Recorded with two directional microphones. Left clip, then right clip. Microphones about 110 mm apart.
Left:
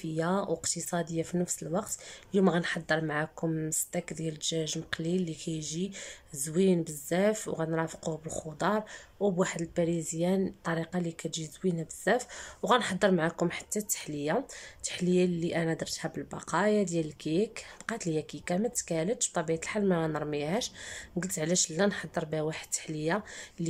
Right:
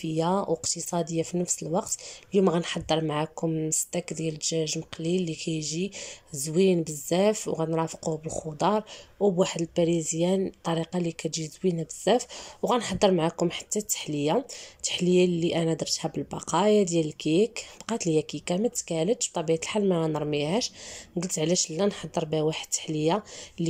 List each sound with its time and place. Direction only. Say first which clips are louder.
0.0 s speech: right 5 dB; 15° right (ahead or behind)